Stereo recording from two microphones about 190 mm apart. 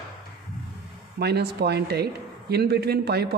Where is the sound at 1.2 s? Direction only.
60° right (ahead or behind).